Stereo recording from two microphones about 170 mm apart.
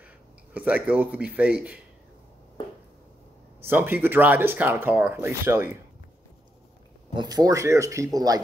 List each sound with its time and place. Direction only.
0.0 s speech: 10° right (ahead or behind)
3.6 s speech: 10° right (ahead or behind)
7.2 s speech: 25° right (ahead or behind)